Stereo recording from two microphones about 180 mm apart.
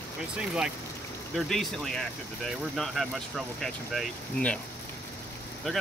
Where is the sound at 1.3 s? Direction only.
Centre (ahead or behind).